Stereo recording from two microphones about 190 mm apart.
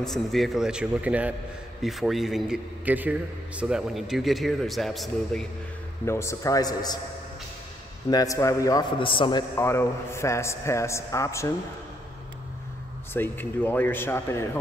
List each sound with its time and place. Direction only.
0.0 s a man's voice: centre (ahead or behind)
6.0 s a man's voice: 15° left (ahead or behind)
8.1 s a man's voice: 20° left (ahead or behind)
9.6 s a man's voice: 15° left (ahead or behind)
13.1 s a man's voice: 10° left (ahead or behind)